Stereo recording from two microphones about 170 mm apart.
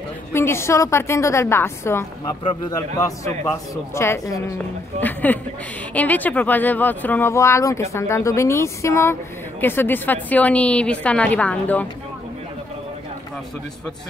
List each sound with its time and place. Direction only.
0.3 s speech: 15° left (ahead or behind)